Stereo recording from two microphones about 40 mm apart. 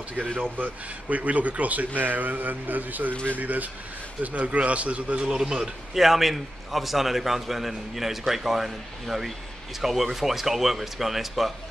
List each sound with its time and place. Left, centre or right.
0.4 s a man's voice: right
5.2 s a man's voice: centre
5.9 s a man's voice: centre